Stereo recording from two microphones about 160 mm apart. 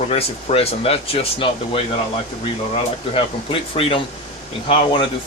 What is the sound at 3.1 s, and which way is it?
Speech, 35° left (ahead or behind).